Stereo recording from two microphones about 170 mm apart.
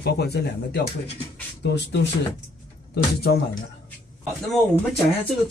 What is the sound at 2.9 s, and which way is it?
Speech, 70° left (ahead or behind).